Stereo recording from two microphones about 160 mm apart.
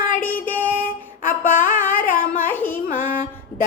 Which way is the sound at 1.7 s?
10° left (ahead or behind).